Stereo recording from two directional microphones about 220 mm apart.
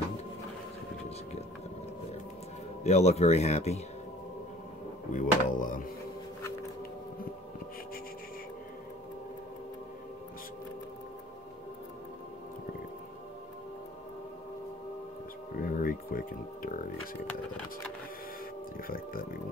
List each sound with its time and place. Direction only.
2.8 s a man's voice: 30° left (ahead or behind)
5.1 s speech: 35° left (ahead or behind)
15.6 s a sound: 40° left (ahead or behind)
18.9 s music: 40° left (ahead or behind)